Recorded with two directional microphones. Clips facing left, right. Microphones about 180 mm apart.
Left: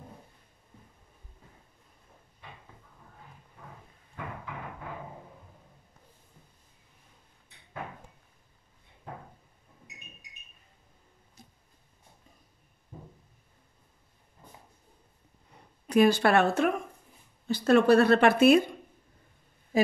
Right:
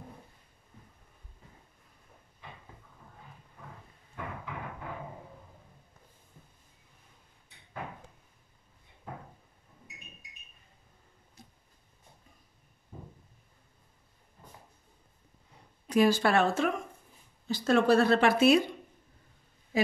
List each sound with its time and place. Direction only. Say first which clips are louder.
15.9 s speech: left 3 dB; 65° left (ahead or behind)